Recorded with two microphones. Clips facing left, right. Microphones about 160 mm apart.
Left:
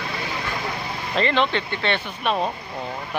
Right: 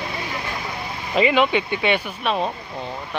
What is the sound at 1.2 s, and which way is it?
Speech, 10° right (ahead or behind).